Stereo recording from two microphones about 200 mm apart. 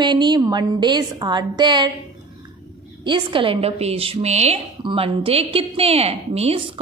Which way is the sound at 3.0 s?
25° right (ahead or behind).